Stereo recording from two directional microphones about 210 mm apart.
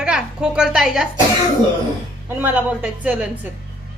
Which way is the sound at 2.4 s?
5° right (ahead or behind).